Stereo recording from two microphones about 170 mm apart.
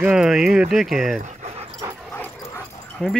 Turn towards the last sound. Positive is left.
turn(degrees=5)  # may be behind; listen again after turning